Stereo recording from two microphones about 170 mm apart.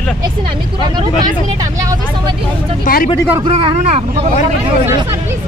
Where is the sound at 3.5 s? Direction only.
35° right (ahead or behind).